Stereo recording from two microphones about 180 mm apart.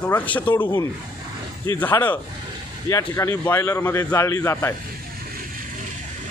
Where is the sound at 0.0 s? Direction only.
10° left (ahead or behind).